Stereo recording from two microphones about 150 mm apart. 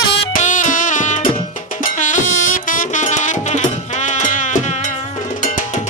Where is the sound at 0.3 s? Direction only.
55° left (ahead or behind).